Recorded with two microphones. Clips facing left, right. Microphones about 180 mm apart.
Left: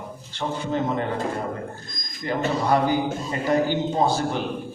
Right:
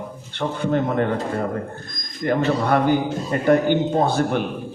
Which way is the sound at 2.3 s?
55° right (ahead or behind).